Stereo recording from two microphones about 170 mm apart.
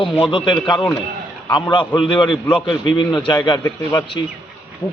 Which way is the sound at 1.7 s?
25° left (ahead or behind).